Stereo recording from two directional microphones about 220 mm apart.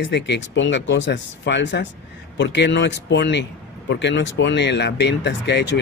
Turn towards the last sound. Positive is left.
turn(degrees=50)  # may be behind; listen again after turning